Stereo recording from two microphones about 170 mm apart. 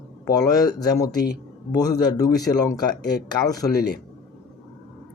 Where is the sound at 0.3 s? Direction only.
20° left (ahead or behind).